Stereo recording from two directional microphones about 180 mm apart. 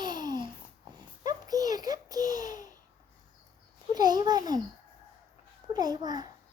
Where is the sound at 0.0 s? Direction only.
25° right (ahead or behind).